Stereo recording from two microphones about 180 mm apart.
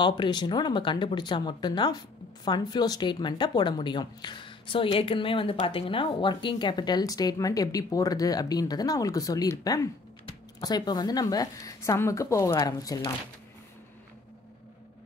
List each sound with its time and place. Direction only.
0.0 s speech: 25° left (ahead or behind)